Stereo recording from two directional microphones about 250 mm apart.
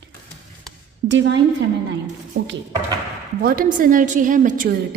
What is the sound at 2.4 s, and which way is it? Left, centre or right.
Speech, right.